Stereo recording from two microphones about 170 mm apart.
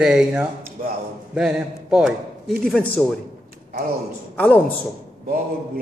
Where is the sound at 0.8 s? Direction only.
55° right (ahead or behind).